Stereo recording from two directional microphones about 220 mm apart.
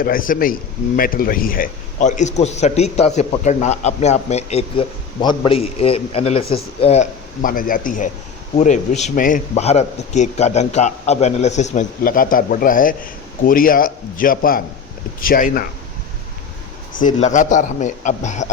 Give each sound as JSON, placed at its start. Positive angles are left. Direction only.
{"t": 0.0, "sound": "a man's voice", "side_deg": 40}
{"t": 16.9, "sound": "a man's voice", "side_deg": 35}